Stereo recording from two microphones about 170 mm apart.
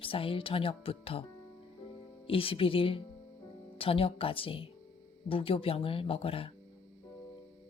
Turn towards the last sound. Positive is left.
turn(degrees=35)  # may be behind; listen again after turning